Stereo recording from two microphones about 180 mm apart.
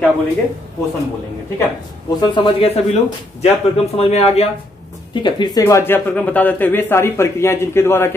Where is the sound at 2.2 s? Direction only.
25° left (ahead or behind).